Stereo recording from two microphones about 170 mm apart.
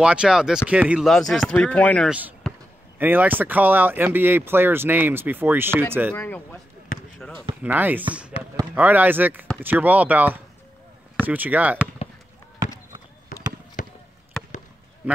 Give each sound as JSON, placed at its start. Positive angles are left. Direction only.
{"t": 0.0, "sound": "speech", "side_deg": -5}
{"t": 2.0, "sound": "speech", "side_deg": -10}
{"t": 6.1, "sound": "speech", "side_deg": 10}
{"t": 6.9, "sound": "basketball bounce", "side_deg": 55}
{"t": 7.6, "sound": "speech", "side_deg": -10}
{"t": 13.3, "sound": "basketball bounce", "side_deg": 50}
{"t": 13.8, "sound": "a sound", "side_deg": 50}
{"t": 14.3, "sound": "basketball bounce", "side_deg": 0}